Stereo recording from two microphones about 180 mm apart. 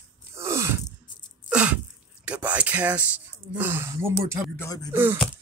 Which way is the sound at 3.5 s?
10° right (ahead or behind).